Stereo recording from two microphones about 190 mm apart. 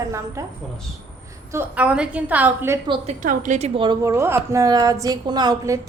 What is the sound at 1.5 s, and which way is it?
A woman's voice, 10° right (ahead or behind).